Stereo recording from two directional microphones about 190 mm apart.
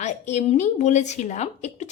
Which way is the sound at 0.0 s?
40° left (ahead or behind).